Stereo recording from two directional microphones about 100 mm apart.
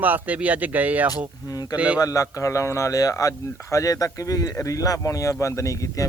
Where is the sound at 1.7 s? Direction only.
10° right (ahead or behind).